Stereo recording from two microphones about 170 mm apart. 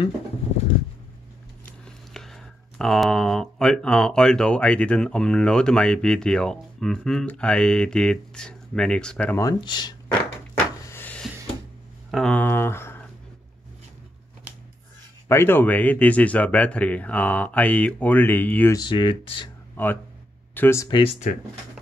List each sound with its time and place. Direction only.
1.7 s speech: centre (ahead or behind)
9.4 s speech: 25° left (ahead or behind)
10.9 s a sound: 10° left (ahead or behind)
12.1 s speech: 5° left (ahead or behind)
15.2 s speech: 15° left (ahead or behind)
18.8 s speech: 30° left (ahead or behind)
19.8 s speech: 10° left (ahead or behind)
20.9 s speech: 35° left (ahead or behind)